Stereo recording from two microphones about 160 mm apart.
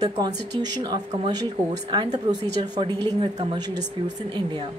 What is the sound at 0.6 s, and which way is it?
Speech, 25° right (ahead or behind).